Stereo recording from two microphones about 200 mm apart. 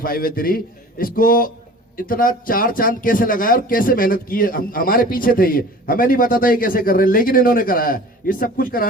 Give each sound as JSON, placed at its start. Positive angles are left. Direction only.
{"t": 0.0, "sound": "speech", "side_deg": 45}